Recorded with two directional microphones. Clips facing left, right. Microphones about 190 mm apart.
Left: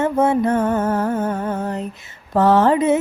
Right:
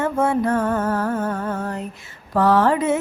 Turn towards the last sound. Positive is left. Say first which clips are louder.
# left 3 dB
turn(degrees=20)  # may be behind; listen again after turning